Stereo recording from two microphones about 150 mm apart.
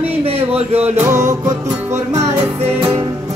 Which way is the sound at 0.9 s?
20° right (ahead or behind).